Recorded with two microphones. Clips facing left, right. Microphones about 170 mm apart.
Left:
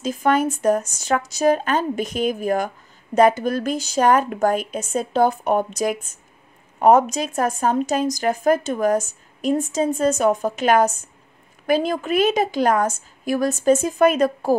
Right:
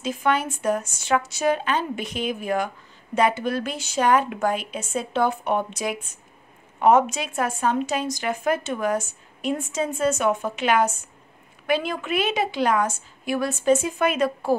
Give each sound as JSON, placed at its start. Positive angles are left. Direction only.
{"t": 0.0, "sound": "a woman's voice", "side_deg": 40}